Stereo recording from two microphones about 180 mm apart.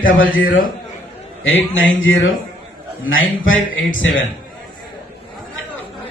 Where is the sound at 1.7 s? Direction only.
90° left.